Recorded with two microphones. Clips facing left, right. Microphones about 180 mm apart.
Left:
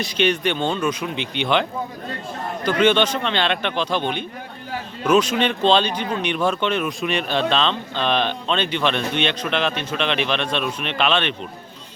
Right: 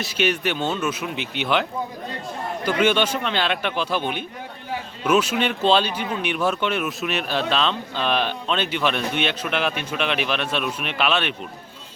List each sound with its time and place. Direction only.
0.0 s speech: 5° right (ahead or behind)
2.6 s speech: 10° right (ahead or behind)